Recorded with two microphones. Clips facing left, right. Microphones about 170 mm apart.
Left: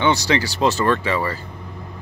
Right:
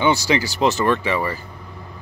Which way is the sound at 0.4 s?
20° right (ahead or behind).